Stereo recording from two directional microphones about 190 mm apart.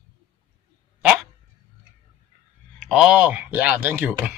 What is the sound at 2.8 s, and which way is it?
Speech, 5° right (ahead or behind).